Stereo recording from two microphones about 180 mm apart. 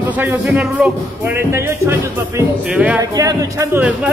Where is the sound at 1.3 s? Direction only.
15° right (ahead or behind).